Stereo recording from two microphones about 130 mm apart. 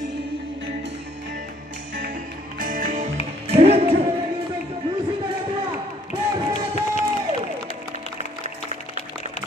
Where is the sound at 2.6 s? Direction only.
90° right.